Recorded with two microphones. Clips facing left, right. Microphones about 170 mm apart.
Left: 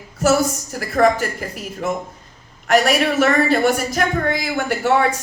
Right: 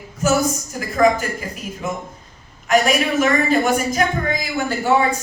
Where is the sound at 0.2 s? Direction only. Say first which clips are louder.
Left 2 dB; 70° left (ahead or behind).